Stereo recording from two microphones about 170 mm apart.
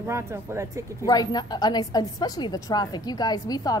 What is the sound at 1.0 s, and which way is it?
A woman's voice, 20° left (ahead or behind).